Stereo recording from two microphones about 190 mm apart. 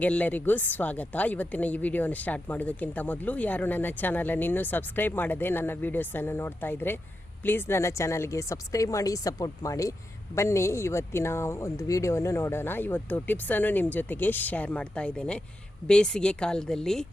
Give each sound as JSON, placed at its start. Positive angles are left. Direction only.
{"t": 0.0, "sound": "a woman's voice", "side_deg": 10}